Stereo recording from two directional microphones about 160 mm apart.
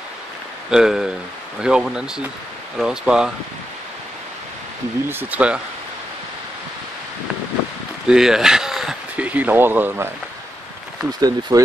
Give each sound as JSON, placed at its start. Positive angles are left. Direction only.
{"t": 0.7, "sound": "speech", "side_deg": -5}
{"t": 5.0, "sound": "speech", "side_deg": -10}
{"t": 8.1, "sound": "speech", "side_deg": -5}